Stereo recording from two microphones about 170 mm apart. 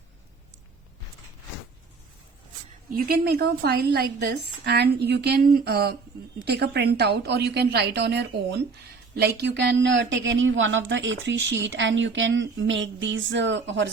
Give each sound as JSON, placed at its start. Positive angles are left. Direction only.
{"t": 2.9, "sound": "a woman's voice", "side_deg": -60}